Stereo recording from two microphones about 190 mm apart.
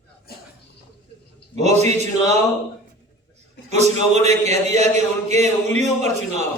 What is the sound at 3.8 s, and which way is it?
Speech, 35° right (ahead or behind).